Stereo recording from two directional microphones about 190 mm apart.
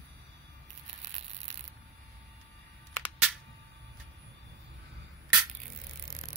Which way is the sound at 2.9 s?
10° left (ahead or behind).